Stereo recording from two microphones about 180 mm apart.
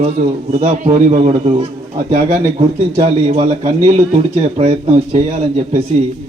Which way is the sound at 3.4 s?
45° right (ahead or behind).